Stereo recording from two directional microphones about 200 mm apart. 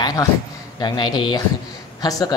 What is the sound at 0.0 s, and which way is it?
A man's voice, 20° left (ahead or behind).